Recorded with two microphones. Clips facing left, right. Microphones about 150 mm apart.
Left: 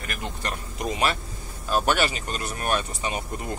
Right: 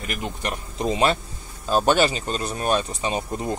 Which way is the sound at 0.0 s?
20° right (ahead or behind).